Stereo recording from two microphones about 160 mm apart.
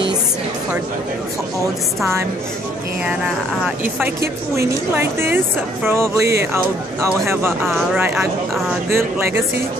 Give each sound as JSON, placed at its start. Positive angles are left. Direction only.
{"t": 3.6, "sound": "speech", "side_deg": -10}
{"t": 8.2, "sound": "speech", "side_deg": -15}